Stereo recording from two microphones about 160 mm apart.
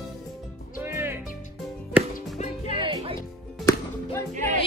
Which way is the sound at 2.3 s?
45° left (ahead or behind).